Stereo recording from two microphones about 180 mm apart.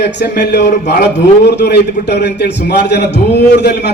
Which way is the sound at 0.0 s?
70° left (ahead or behind).